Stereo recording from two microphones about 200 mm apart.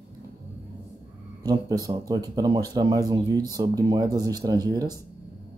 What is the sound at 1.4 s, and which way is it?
Speech, 20° right (ahead or behind).